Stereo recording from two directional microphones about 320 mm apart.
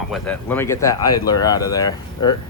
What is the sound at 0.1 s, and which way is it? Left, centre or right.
Speech, centre.